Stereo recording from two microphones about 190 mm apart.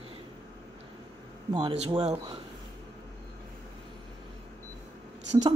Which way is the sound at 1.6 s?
30° right (ahead or behind).